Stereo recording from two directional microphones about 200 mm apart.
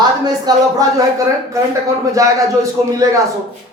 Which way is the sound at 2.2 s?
15° right (ahead or behind).